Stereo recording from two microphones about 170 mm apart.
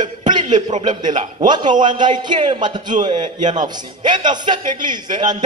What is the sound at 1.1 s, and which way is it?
Speech, 45° right (ahead or behind).